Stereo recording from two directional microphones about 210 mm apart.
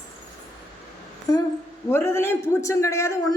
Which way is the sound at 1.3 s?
20° left (ahead or behind).